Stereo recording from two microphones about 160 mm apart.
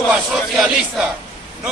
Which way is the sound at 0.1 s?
Centre (ahead or behind).